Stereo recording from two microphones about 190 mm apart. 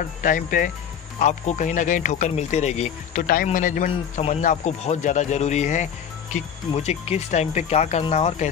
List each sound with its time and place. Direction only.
0.2 s speech: 45° left (ahead or behind)